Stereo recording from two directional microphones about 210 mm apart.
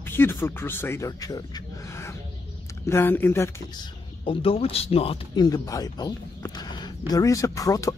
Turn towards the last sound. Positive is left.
turn(degrees=15)  # may be behind; listen again after turning